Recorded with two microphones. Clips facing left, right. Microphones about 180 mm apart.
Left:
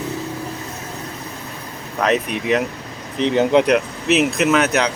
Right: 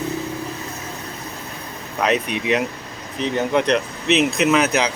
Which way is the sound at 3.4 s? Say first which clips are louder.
Left 5 dB; 15° left (ahead or behind).